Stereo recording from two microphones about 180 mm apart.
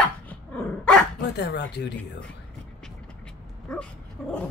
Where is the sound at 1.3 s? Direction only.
70° left (ahead or behind).